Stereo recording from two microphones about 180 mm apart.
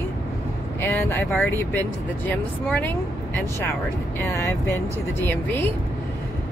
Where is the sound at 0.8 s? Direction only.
15° left (ahead or behind).